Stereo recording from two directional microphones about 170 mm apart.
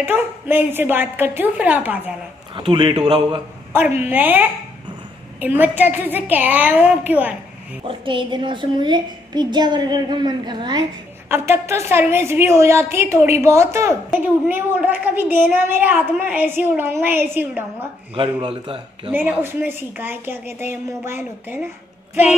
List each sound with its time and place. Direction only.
0.0 s a woman's voice: 10° right (ahead or behind)
2.5 s a woman's voice: 30° right (ahead or behind)
4.0 s a woman's voice: 10° right (ahead or behind)
7.9 s a woman's voice: 30° right (ahead or behind)
11.2 s a woman's voice: 15° right (ahead or behind)
18.1 s a man's voice: 30° right (ahead or behind)
19.1 s a woman's voice: 10° right (ahead or behind)